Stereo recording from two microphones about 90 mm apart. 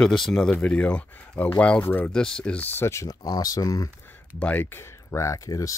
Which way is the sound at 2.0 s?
5° left (ahead or behind).